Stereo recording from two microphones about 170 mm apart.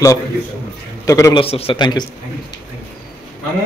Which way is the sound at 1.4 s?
35° left (ahead or behind).